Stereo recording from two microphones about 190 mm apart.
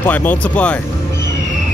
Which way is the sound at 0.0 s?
10° left (ahead or behind).